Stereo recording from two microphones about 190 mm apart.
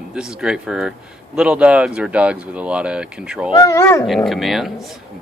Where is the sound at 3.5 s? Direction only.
20° left (ahead or behind).